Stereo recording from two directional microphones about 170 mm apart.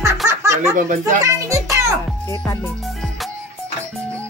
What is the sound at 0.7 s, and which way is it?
Speech, 50° right (ahead or behind).